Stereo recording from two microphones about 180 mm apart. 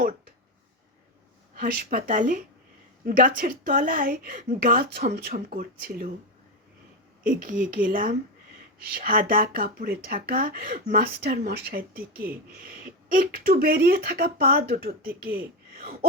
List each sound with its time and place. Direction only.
1.5 s speech: 50° right (ahead or behind)
7.6 s speech: 50° right (ahead or behind)